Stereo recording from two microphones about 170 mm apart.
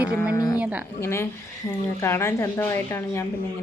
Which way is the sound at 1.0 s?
15° left (ahead or behind).